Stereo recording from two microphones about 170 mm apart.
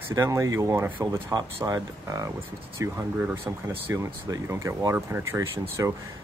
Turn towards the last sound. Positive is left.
turn(degrees=-15)  # may be behind; listen again after turning